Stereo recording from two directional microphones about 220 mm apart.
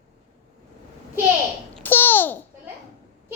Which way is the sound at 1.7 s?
10° left (ahead or behind).